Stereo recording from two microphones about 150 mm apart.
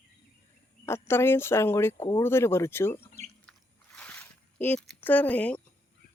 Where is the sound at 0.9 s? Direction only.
15° left (ahead or behind).